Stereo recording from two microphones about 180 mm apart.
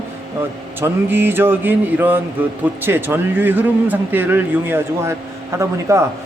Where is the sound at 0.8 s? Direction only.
10° right (ahead or behind).